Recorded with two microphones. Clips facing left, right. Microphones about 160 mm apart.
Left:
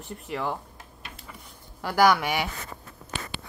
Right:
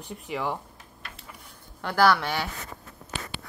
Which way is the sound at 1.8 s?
15° left (ahead or behind).